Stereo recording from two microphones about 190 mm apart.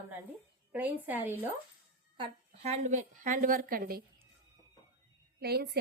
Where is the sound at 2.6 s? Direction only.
35° right (ahead or behind).